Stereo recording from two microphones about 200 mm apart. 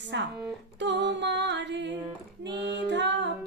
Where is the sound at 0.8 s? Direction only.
60° right (ahead or behind).